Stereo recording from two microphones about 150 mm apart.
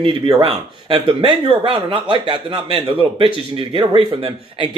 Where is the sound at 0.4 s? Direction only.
40° right (ahead or behind).